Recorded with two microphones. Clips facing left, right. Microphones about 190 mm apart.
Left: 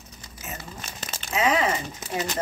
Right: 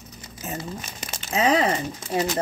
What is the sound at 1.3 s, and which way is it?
Speech, 35° right (ahead or behind).